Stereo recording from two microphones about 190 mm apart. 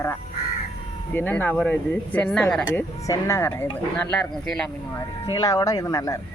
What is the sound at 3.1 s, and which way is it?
Speech, 15° left (ahead or behind).